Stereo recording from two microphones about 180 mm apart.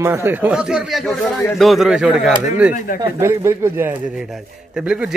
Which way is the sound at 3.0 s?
15° right (ahead or behind).